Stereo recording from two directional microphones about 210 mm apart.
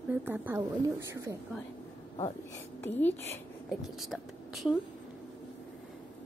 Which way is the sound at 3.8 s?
Centre (ahead or behind).